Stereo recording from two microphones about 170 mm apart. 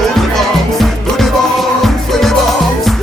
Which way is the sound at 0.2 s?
Centre (ahead or behind).